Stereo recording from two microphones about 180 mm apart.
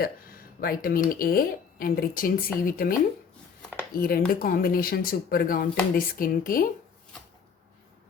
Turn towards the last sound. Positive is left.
turn(degrees=50)  # may be behind; listen again after turning